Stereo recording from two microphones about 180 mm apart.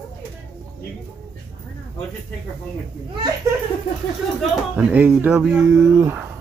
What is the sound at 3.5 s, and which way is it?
Laughter, 15° right (ahead or behind).